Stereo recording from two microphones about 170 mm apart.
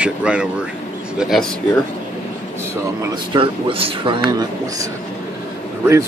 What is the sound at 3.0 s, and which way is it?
Speech, 25° right (ahead or behind).